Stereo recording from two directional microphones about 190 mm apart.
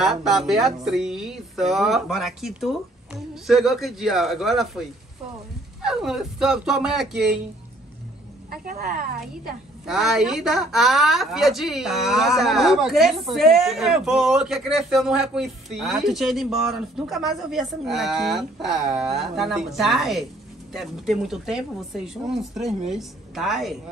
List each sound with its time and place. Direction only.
0.0 s a woman's voice: centre (ahead or behind)
5.9 s a woman's voice: 5° right (ahead or behind)
8.5 s a woman's voice: 50° right (ahead or behind)
9.8 s a woman's voice: centre (ahead or behind)